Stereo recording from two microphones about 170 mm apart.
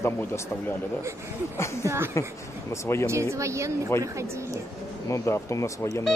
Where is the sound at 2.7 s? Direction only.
15° left (ahead or behind).